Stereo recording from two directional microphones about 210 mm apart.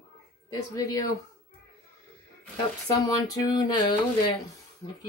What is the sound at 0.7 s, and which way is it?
Speech, 15° left (ahead or behind).